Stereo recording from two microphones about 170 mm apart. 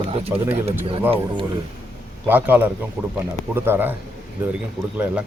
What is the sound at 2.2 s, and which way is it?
Speech, 10° right (ahead or behind).